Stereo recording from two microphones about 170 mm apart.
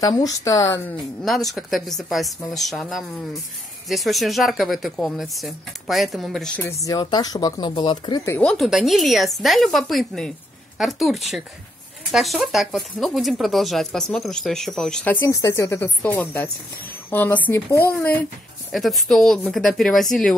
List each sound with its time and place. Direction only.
0.0 s speech: 20° left (ahead or behind)
1.2 s speech: centre (ahead or behind)
6.8 s speech: 20° left (ahead or behind)
8.4 s speech: centre (ahead or behind)
18.7 s speech: centre (ahead or behind)